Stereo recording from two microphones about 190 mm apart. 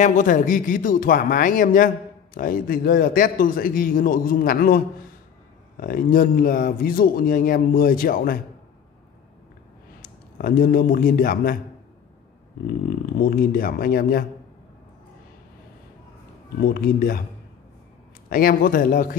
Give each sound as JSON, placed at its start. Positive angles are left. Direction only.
{"t": 0.0, "sound": "a man's voice", "side_deg": 40}
{"t": 10.3, "sound": "a man's voice", "side_deg": 50}
{"t": 13.2, "sound": "a man's voice", "side_deg": 50}
{"t": 16.6, "sound": "a man's voice", "side_deg": 50}
{"t": 18.3, "sound": "a man's voice", "side_deg": 50}